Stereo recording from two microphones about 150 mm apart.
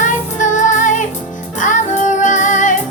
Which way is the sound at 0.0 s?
55° left (ahead or behind).